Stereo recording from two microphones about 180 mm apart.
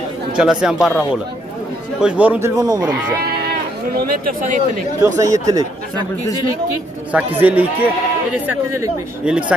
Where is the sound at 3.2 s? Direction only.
60° right (ahead or behind).